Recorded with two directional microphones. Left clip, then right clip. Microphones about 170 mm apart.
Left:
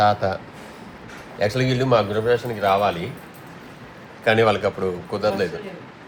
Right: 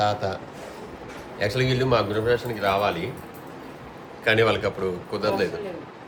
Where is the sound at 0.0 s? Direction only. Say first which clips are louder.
Left 6 dB; 45° left (ahead or behind).